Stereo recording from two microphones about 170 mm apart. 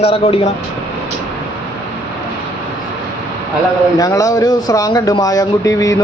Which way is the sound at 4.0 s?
20° left (ahead or behind).